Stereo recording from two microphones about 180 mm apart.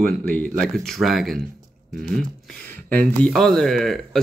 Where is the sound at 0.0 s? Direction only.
10° left (ahead or behind).